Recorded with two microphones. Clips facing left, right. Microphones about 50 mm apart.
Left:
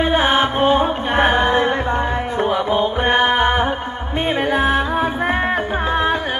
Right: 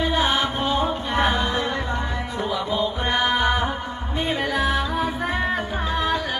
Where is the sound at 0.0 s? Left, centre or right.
Left.